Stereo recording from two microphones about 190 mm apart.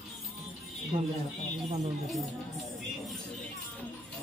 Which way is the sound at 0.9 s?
45° right (ahead or behind).